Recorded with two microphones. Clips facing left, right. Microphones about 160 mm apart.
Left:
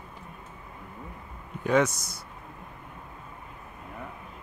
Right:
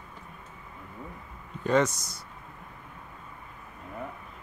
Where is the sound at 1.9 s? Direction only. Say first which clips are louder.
Left 1 dB; 15° right (ahead or behind).